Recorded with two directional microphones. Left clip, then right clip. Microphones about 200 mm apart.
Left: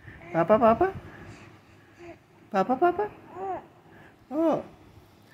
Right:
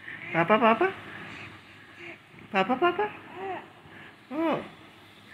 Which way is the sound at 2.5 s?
50° left (ahead or behind).